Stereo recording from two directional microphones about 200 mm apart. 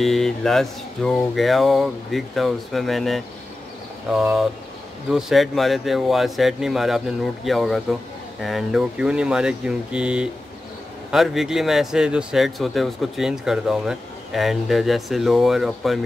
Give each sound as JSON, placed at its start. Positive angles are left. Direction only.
{"t": 0.0, "sound": "speech", "side_deg": 0}